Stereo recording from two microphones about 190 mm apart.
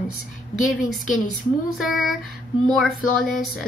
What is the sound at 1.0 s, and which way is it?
Speech, 45° left (ahead or behind).